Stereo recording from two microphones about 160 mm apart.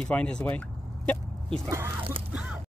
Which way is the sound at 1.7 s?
15° right (ahead or behind).